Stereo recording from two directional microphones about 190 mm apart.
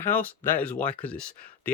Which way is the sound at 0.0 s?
10° left (ahead or behind).